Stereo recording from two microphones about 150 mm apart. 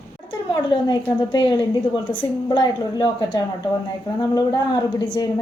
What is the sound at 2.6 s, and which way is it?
Speech, 30° left (ahead or behind).